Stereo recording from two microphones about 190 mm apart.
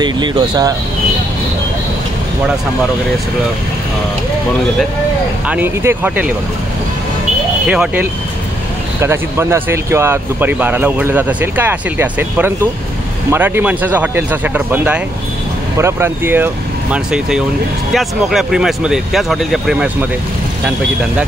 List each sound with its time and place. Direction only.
0.0 s speech: 25° right (ahead or behind)
5.5 s speech: 10° right (ahead or behind)
7.6 s speech: 5° right (ahead or behind)